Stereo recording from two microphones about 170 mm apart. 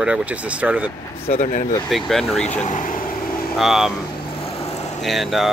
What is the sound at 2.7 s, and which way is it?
Speech, 50° left (ahead or behind).